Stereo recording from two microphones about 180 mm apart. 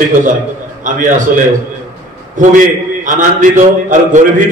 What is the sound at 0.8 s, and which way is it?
Speech, 45° right (ahead or behind).